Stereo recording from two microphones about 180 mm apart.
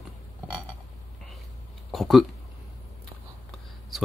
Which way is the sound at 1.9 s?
Centre (ahead or behind).